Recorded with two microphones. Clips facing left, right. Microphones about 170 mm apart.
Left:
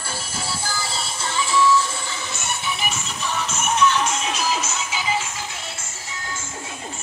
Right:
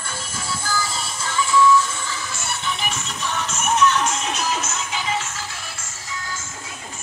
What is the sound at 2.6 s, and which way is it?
Music, 5° left (ahead or behind).